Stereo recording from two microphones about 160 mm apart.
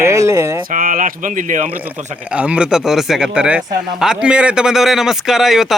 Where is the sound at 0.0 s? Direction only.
20° right (ahead or behind).